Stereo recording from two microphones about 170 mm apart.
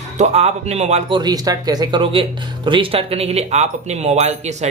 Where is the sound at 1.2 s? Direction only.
25° right (ahead or behind); by 4.7 s 40° right (ahead or behind).